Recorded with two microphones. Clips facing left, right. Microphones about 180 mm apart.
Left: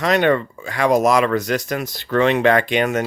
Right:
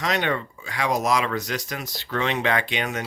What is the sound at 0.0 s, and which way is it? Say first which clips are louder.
Speech: left 8 dB; 55° left (ahead or behind).